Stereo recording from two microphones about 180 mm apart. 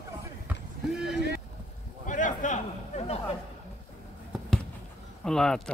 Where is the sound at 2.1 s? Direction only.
45° left (ahead or behind).